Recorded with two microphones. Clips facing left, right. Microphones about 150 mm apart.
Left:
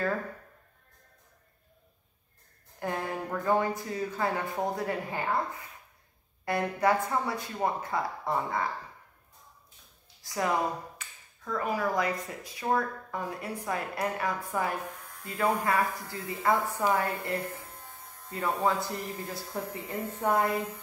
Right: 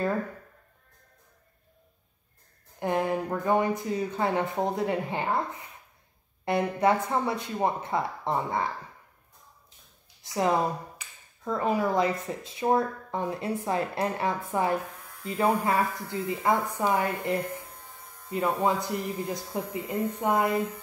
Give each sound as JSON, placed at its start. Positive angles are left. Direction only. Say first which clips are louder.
{"t": 2.8, "sound": "speech", "louder": "right 6 dB", "side_deg": -20}
{"t": 6.4, "sound": "speech", "louder": "right 3 dB", "side_deg": -25}
{"t": 10.2, "sound": "speech", "louder": "right 4 dB", "side_deg": -25}
{"t": 18.3, "sound": "speech", "louder": "right 3 dB", "side_deg": -20}